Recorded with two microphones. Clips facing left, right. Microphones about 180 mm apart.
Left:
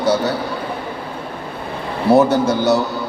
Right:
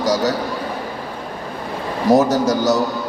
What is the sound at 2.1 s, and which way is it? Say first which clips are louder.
Speech: left 1 dB; 35° right (ahead or behind).